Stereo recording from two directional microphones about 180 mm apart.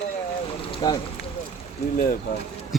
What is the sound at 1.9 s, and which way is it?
Speech, 50° left (ahead or behind).